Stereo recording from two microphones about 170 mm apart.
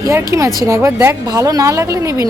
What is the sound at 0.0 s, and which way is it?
Speech, 15° right (ahead or behind).